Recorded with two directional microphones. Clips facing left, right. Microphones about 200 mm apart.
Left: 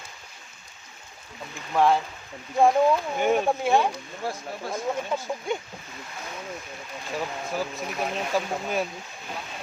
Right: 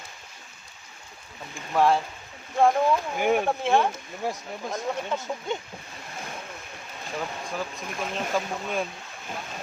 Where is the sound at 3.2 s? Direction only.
15° right (ahead or behind).